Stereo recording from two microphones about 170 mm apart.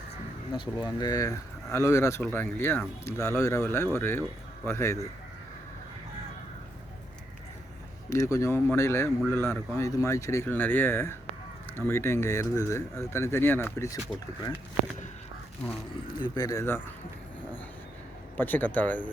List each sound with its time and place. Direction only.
0.5 s speech: 25° left (ahead or behind)
8.1 s speech: 20° left (ahead or behind)
16.2 s speech: 25° left (ahead or behind)
18.3 s speech: 10° left (ahead or behind)